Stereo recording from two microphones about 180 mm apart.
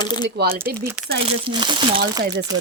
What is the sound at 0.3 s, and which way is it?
Speech, 55° right (ahead or behind).